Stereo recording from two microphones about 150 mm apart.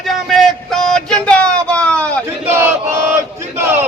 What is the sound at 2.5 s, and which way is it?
Chant, 15° right (ahead or behind).